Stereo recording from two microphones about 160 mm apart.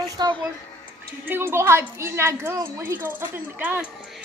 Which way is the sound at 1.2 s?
15° right (ahead or behind).